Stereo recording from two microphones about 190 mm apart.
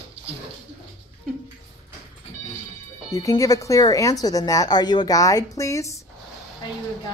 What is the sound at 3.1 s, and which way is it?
A woman's voice, 20° left (ahead or behind).